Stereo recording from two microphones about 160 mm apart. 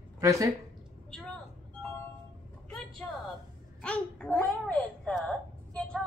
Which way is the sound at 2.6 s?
Centre (ahead or behind).